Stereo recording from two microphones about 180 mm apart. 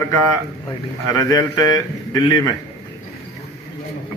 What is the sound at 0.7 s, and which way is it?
A man's voice, 20° left (ahead or behind).